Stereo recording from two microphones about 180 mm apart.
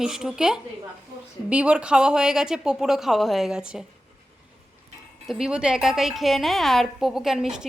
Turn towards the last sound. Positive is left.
turn(degrees=0)  # may be behind; listen again after turning